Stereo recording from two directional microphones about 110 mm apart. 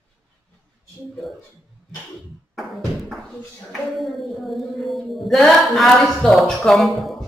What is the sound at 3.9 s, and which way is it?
Music, centre (ahead or behind).